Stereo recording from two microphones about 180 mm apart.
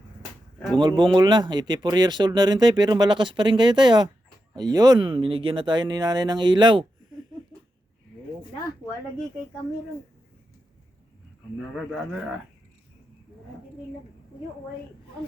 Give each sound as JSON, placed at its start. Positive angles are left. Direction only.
{"t": 0.8, "sound": "speech", "side_deg": -25}